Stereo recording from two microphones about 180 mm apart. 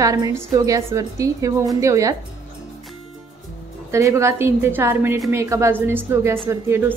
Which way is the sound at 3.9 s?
15° right (ahead or behind).